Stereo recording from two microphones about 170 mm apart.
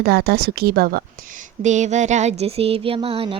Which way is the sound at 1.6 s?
45° right (ahead or behind).